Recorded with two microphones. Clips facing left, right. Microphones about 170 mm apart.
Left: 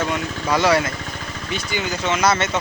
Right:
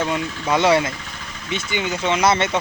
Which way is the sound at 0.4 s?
25° right (ahead or behind).